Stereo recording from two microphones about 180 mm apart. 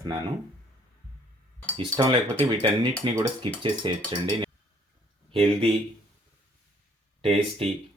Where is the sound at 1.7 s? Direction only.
30° right (ahead or behind).